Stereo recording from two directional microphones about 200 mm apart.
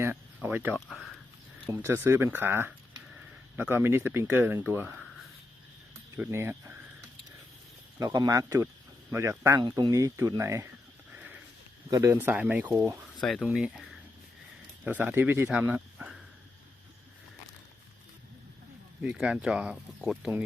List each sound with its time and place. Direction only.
0.4 s speech: 10° right (ahead or behind)
1.8 s speech: 10° right (ahead or behind)
6.1 s speech: 15° right (ahead or behind)
7.9 s speech: 15° right (ahead or behind)
11.1 s sniff: 10° right (ahead or behind)
11.9 s speech: 15° right (ahead or behind)
13.2 s speech: centre (ahead or behind)
14.8 s speech: 10° right (ahead or behind)
19.0 s speech: centre (ahead or behind)